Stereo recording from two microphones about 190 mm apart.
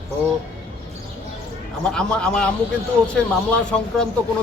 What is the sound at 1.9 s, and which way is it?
A man's voice, 5° left (ahead or behind).